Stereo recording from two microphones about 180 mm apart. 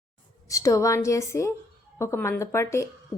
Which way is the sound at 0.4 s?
20° left (ahead or behind).